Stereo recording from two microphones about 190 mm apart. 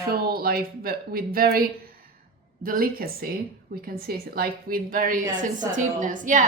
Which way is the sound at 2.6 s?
50° right (ahead or behind).